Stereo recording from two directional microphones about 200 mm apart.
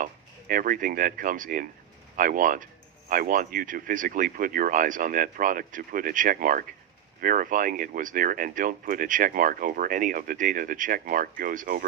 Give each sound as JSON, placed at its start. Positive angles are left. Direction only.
{"t": 0.0, "sound": "speech", "side_deg": -45}